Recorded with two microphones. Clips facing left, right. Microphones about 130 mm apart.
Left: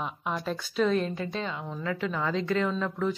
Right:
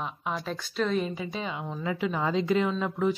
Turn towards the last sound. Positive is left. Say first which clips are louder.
# right 2 dB
turn(degrees=-10)  # may be behind; listen again after turning